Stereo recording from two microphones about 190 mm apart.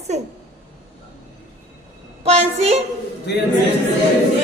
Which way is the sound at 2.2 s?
35° right (ahead or behind).